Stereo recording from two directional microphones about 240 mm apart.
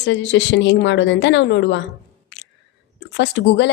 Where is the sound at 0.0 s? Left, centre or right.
Left.